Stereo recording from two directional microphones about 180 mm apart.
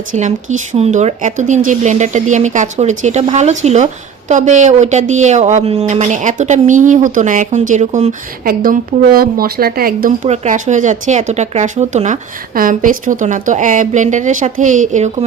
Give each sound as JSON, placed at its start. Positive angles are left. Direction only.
{"t": 0.1, "sound": "speech", "side_deg": -45}
{"t": 10.2, "sound": "speech", "side_deg": -40}